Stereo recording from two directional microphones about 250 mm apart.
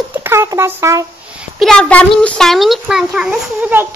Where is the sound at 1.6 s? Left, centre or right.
Centre.